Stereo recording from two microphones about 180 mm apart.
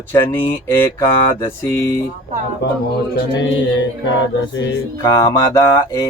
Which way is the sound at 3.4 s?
85° left.